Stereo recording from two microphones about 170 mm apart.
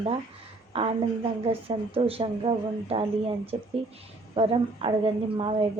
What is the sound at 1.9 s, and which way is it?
A woman's voice, 35° right (ahead or behind).